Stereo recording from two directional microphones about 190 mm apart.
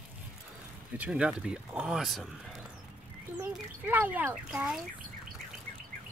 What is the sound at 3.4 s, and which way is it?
Speech, 10° right (ahead or behind).